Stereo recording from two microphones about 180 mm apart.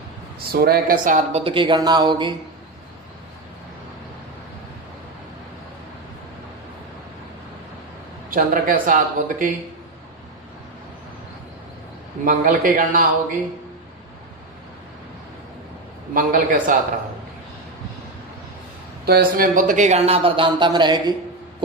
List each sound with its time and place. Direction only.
0.4 s speech: 60° right (ahead or behind)
1.5 s speech: 25° right (ahead or behind)
8.3 s speech: 50° right (ahead or behind)
12.2 s speech: 50° right (ahead or behind)
16.1 s speech: 50° right (ahead or behind)
19.0 s speech: 55° right (ahead or behind); by 21.2 s 25° right (ahead or behind)